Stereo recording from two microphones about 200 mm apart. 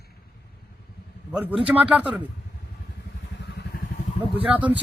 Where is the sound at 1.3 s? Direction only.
5° right (ahead or behind).